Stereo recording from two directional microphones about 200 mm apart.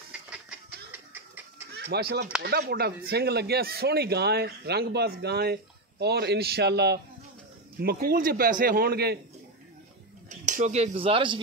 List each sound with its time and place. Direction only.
1.7 s speech: 50° right (ahead or behind)
10.4 s speech: 35° right (ahead or behind)